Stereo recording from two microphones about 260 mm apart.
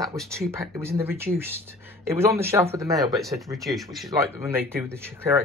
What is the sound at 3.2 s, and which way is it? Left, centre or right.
Speech, centre.